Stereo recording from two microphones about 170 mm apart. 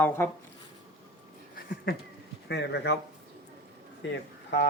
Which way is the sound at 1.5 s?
65° left (ahead or behind).